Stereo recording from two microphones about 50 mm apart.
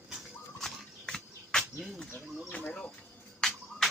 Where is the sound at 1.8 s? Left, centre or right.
Centre.